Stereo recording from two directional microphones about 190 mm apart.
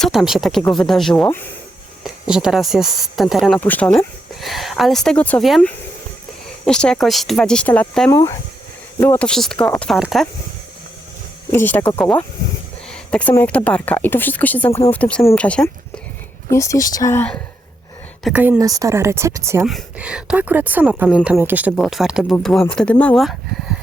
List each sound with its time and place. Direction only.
0.0 s speech: centre (ahead or behind)
2.0 s speech: 5° right (ahead or behind)
8.1 s speech: 15° left (ahead or behind); by 10.2 s centre (ahead or behind)
11.5 s speech: 10° left (ahead or behind)
18.2 s a woman's voice: 5° right (ahead or behind)
18.6 s speech: 20° right (ahead or behind)
19.6 s speech: 5° right (ahead or behind)